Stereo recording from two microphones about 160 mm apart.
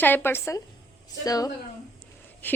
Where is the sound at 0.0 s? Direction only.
15° left (ahead or behind).